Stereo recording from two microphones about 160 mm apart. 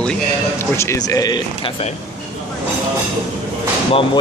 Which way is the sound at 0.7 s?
20° left (ahead or behind).